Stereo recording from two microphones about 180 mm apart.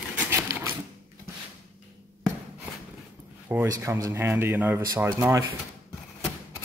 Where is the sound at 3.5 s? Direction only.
15° right (ahead or behind).